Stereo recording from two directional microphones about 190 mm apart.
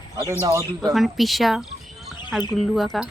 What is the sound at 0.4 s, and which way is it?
Speech, 20° right (ahead or behind).